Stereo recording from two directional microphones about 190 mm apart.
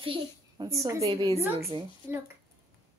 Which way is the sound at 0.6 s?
15° right (ahead or behind).